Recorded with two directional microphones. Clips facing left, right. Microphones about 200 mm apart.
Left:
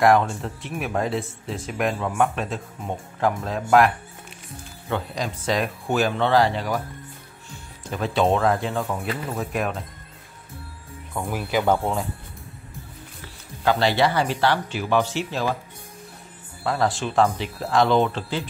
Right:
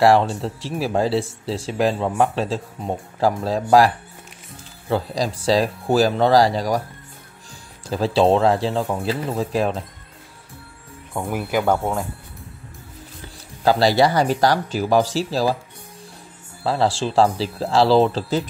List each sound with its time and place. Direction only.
0.0 s speech: 30° right (ahead or behind)
4.8 s speech: 35° right (ahead or behind)
11.1 s speech: 15° right (ahead or behind)
11.6 s speech: centre (ahead or behind)
13.7 s speech: 35° right (ahead or behind)
16.6 s speech: 30° right (ahead or behind)